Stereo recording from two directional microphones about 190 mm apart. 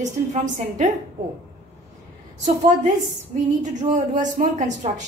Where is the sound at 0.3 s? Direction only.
40° right (ahead or behind).